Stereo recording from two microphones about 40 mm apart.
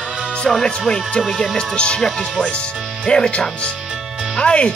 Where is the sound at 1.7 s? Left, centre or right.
Left.